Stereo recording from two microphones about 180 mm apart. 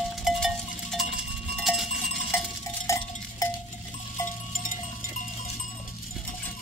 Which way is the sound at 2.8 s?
15° left (ahead or behind).